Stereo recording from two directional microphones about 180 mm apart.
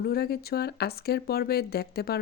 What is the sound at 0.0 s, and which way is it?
A woman's voice, 60° left (ahead or behind).